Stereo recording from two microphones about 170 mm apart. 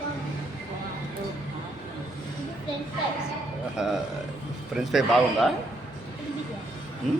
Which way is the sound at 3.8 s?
5° right (ahead or behind).